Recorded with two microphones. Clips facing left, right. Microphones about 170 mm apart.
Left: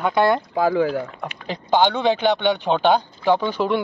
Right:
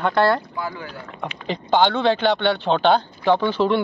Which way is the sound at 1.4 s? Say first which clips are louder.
Even; 10° left (ahead or behind).